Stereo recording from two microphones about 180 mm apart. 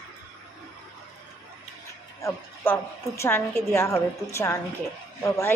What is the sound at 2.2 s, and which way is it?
A woman's voice, 15° left (ahead or behind).